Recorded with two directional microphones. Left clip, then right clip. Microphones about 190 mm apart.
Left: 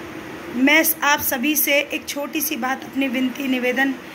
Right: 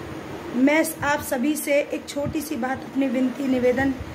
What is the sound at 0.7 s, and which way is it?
Speech, 15° right (ahead or behind).